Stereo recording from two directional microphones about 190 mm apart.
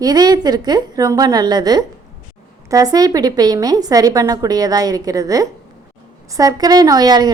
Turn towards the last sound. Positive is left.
turn(degrees=-20)  # may be behind; listen again after turning